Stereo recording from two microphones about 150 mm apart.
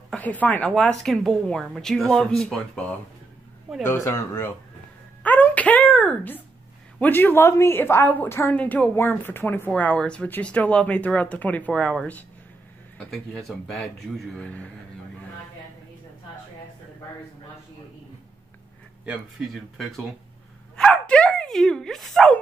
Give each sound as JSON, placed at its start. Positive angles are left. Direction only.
{"t": 0.1, "sound": "a woman's voice", "side_deg": 10}
{"t": 5.2, "sound": "music", "side_deg": 10}
{"t": 7.0, "sound": "a woman's voice", "side_deg": 15}
{"t": 20.7, "sound": "dog", "side_deg": 5}